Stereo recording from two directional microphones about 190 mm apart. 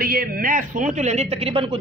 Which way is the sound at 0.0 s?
50° right (ahead or behind).